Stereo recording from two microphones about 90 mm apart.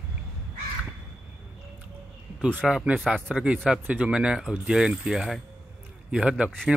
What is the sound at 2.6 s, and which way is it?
Speech, 10° right (ahead or behind).